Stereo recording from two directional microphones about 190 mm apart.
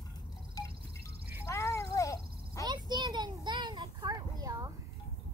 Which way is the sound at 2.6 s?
20° right (ahead or behind).